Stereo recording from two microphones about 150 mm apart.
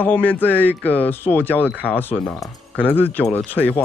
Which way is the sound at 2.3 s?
Centre (ahead or behind).